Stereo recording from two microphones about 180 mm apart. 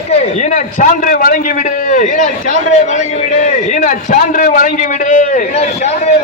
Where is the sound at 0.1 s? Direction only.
40° left (ahead or behind).